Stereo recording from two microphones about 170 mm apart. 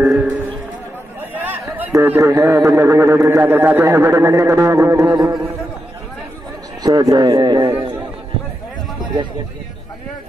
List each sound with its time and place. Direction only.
0.0 s a sound: 10° right (ahead or behind)
1.3 s a man's voice: 10° right (ahead or behind)
6.8 s speech: 20° right (ahead or behind)